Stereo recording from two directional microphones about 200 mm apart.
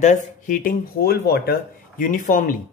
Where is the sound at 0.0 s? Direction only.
40° left (ahead or behind).